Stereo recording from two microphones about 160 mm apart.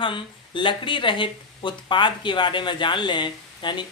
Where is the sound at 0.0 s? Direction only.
30° left (ahead or behind).